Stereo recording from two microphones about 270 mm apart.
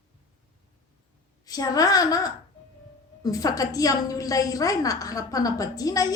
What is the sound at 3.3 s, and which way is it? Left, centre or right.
A woman's voice, centre.